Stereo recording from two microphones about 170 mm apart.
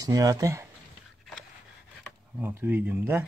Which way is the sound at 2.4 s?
10° right (ahead or behind).